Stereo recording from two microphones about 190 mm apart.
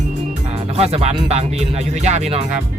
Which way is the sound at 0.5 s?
30° right (ahead or behind).